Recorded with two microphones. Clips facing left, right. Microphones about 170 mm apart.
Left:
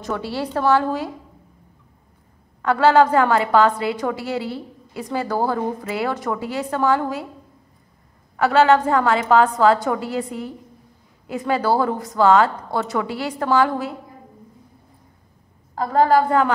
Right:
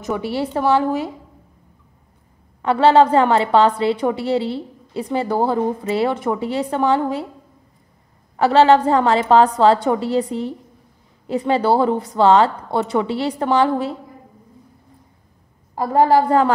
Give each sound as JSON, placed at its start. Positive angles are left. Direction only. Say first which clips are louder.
{"t": 0.0, "sound": "speech", "louder": "right 3 dB", "side_deg": -20}
{"t": 2.6, "sound": "speech", "louder": "right 2 dB", "side_deg": -25}
{"t": 8.4, "sound": "a woman's voice", "louder": "right 3 dB", "side_deg": -30}
{"t": 15.7, "sound": "a woman's voice", "louder": "right 2 dB", "side_deg": -15}
{"t": 16.0, "sound": "a woman's voice", "louder": "right 2 dB", "side_deg": -30}